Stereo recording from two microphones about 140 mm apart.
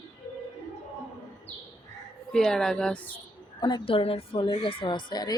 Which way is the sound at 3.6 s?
35° left (ahead or behind).